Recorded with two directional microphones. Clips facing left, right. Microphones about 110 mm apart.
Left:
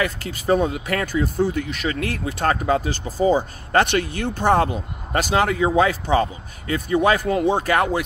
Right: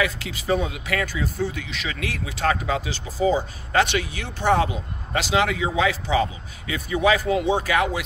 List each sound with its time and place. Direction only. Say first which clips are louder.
0.0 s speech: left 2 dB; 45° left (ahead or behind)